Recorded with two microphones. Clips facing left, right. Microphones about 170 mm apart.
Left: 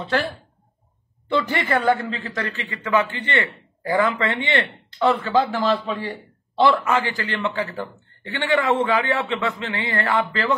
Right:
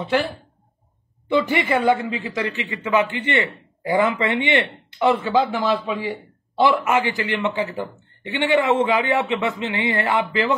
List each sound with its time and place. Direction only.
0.0 s speech: 15° right (ahead or behind)
1.3 s speech: 15° right (ahead or behind)